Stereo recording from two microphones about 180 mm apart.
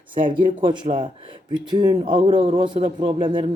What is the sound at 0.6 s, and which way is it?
Speech, 25° right (ahead or behind).